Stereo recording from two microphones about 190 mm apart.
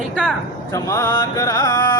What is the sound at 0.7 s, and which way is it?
Music, 15° left (ahead or behind).